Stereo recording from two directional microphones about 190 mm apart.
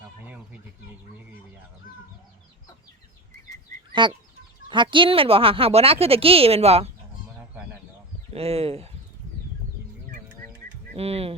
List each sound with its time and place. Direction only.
4.0 s speech: 25° right (ahead or behind)
8.3 s speech: 35° right (ahead or behind)
10.9 s speech: 30° right (ahead or behind)